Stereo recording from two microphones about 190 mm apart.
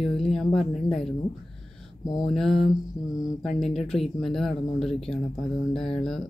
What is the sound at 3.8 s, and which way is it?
Speech, centre (ahead or behind).